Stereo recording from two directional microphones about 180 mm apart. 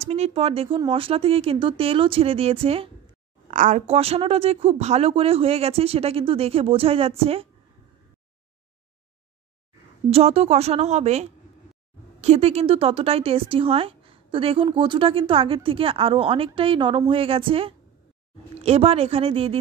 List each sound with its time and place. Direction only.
0.0 s a woman's voice: 35° right (ahead or behind)
3.4 s a woman's voice: 45° right (ahead or behind)
10.1 s a woman's voice: 35° right (ahead or behind)